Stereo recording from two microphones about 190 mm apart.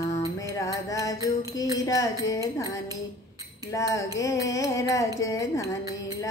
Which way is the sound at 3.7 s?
15° left (ahead or behind).